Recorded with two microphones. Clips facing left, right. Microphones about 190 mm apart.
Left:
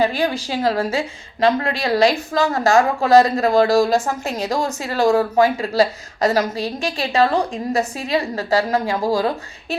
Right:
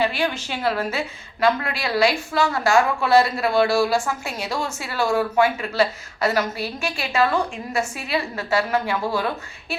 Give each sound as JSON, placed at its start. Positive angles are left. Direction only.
{"t": 0.0, "sound": "a woman's voice", "side_deg": 40}